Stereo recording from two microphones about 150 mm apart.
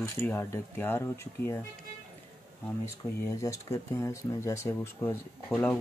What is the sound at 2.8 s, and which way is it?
Speech, 20° left (ahead or behind).